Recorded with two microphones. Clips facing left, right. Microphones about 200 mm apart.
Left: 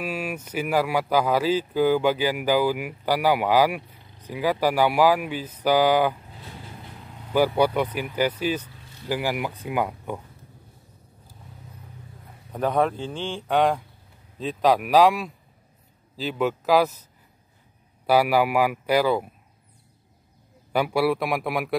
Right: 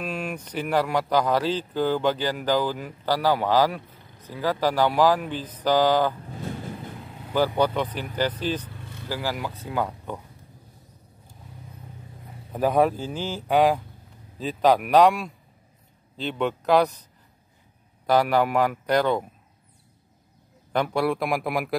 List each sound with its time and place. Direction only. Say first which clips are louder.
0.0 s speech: left 1 dB; 5° left (ahead or behind)
6.4 s vehicle: right 11 dB; 45° right (ahead or behind)
7.3 s speech: left 2 dB; 10° left (ahead or behind)
8.6 s vehicle: right 7 dB; 55° right (ahead or behind)
9.1 s speech: left 3 dB; 15° left (ahead or behind)
12.5 s a man's voice: right 2 dB; 10° right (ahead or behind)
18.0 s speech: left 1 dB; 10° left (ahead or behind)
20.7 s a man's voice: left 2 dB; 5° left (ahead or behind)